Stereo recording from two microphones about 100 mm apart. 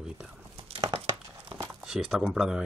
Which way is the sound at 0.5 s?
75° right (ahead or behind).